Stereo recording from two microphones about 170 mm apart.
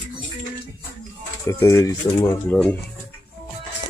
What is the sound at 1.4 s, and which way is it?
Speech, 20° left (ahead or behind).